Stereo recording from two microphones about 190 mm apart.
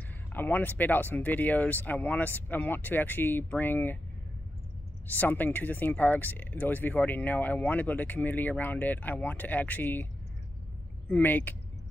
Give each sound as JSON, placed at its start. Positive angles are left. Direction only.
{"t": 0.3, "sound": "speech", "side_deg": 10}
{"t": 5.0, "sound": "speech", "side_deg": 10}
{"t": 11.1, "sound": "speech", "side_deg": 10}